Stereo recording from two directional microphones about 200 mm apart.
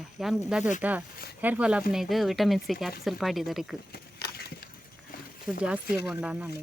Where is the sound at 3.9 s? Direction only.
50° left (ahead or behind).